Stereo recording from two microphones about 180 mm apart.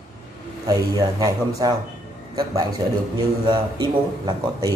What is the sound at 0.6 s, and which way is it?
Speech, 20° right (ahead or behind).